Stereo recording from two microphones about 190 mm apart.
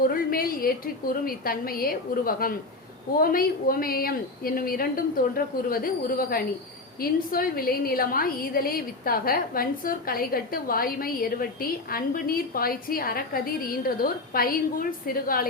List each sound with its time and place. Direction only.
0.0 s a woman's voice: 50° left (ahead or behind)